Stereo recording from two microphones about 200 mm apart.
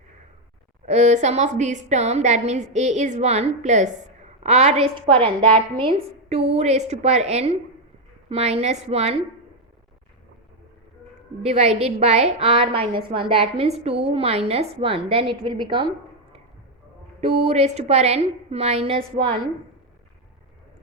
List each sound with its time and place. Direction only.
0.9 s a woman's voice: 35° right (ahead or behind)
11.4 s a woman's voice: 35° right (ahead or behind)
17.2 s a woman's voice: 35° right (ahead or behind)